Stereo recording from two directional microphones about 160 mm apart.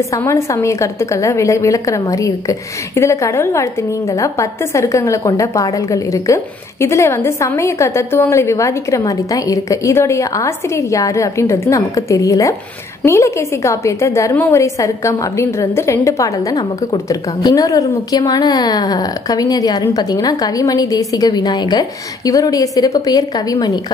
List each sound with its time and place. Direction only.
0.1 s a woman's voice: 20° left (ahead or behind)